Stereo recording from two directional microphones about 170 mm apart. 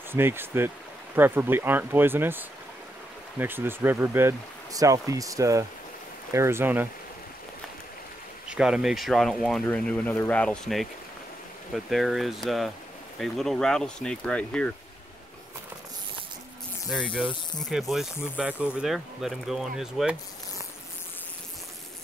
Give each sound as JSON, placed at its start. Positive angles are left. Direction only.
{"t": 0.1, "sound": "speech", "side_deg": -15}
{"t": 8.5, "sound": "speech", "side_deg": -5}
{"t": 16.9, "sound": "speech", "side_deg": 0}